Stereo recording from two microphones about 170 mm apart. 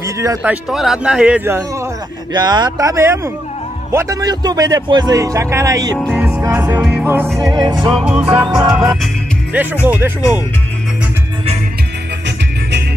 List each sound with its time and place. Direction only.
0.0 s a man's voice: 20° right (ahead or behind)
2.3 s speech: 25° right (ahead or behind)
6.1 s music: 5° right (ahead or behind)
7.3 s speech: 20° right (ahead or behind)
7.9 s a man's voice: 5° right (ahead or behind)
8.5 s music: 5° right (ahead or behind)
9.8 s a man's voice: 10° right (ahead or behind)